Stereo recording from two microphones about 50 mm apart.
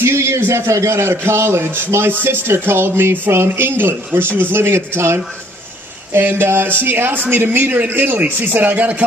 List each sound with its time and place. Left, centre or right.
0.0 s a sound: right
0.4 s a man's voice: right
6.1 s speech: right